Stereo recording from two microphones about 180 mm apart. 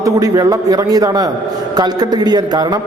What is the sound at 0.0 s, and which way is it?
A man's voice, 20° right (ahead or behind).